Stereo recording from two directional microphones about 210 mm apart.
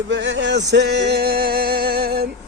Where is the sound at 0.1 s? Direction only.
60° right (ahead or behind).